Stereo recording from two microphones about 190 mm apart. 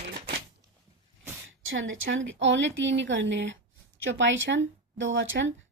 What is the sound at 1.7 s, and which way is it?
Speech, 85° right.